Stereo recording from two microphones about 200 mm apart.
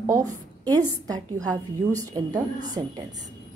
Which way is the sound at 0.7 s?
20° right (ahead or behind).